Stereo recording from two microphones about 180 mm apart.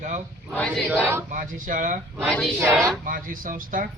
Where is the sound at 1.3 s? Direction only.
45° right (ahead or behind).